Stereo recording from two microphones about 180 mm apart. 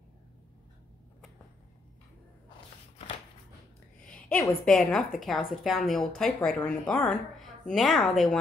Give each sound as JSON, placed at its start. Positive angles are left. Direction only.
{"t": 4.0, "sound": "a woman's voice", "side_deg": 5}